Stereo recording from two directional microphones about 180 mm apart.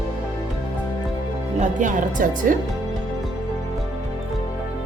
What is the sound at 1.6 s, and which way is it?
Speech, 45° right (ahead or behind).